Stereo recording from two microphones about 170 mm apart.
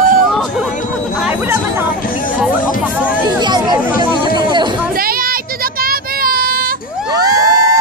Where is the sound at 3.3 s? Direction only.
25° right (ahead or behind).